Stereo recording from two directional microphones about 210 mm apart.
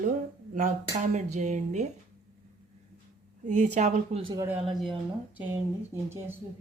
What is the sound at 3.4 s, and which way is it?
Speech, 35° right (ahead or behind).